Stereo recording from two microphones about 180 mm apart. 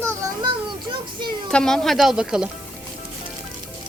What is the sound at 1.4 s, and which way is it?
Speech, 5° left (ahead or behind).